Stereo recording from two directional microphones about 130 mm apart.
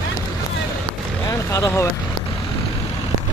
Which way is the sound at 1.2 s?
25° left (ahead or behind).